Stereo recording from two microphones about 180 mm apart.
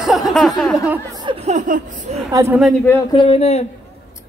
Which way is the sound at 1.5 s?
40° right (ahead or behind).